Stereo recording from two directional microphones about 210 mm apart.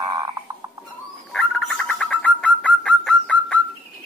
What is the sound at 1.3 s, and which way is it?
Bird, 5° left (ahead or behind).